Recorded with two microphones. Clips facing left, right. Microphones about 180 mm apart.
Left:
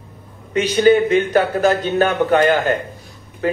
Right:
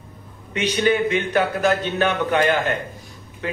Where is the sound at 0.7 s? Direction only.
35° left (ahead or behind).